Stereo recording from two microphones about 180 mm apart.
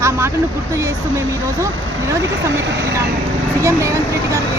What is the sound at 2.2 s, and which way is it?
Speech, 75° right (ahead or behind).